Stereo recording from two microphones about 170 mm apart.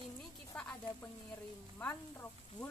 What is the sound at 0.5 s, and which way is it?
Speech, 10° left (ahead or behind).